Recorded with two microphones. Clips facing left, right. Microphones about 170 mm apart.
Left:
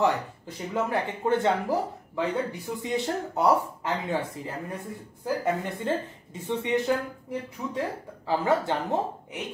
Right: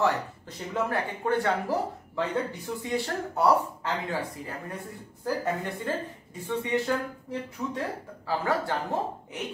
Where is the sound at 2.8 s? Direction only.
20° left (ahead or behind).